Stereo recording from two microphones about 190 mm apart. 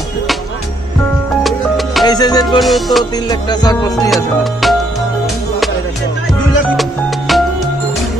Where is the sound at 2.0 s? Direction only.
20° left (ahead or behind).